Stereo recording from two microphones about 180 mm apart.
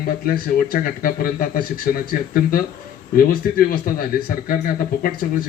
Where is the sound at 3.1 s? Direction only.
55° left (ahead or behind).